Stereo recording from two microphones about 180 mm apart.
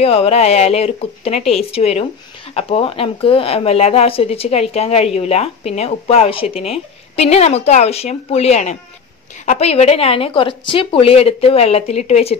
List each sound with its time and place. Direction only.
0.0 s speech: 35° left (ahead or behind)